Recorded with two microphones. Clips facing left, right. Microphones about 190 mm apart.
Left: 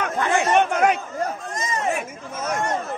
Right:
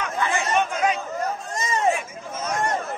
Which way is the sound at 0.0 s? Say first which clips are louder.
Left 4 dB; 65° left (ahead or behind).